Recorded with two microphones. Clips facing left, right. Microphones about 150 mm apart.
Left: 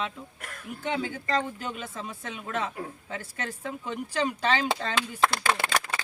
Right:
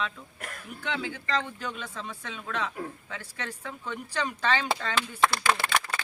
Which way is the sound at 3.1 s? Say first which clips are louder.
Left 6 dB; 45° left (ahead or behind).